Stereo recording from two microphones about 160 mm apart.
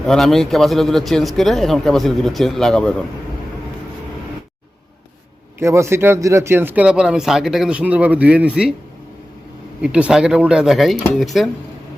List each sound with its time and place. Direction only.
0.1 s a man's voice: centre (ahead or behind)
5.5 s speech: 15° right (ahead or behind)
9.8 s a man's voice: 5° right (ahead or behind)